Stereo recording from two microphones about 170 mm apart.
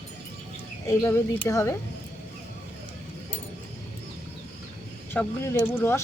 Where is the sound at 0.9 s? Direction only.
15° left (ahead or behind).